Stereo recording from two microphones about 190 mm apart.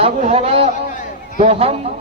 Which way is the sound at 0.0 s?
35° right (ahead or behind).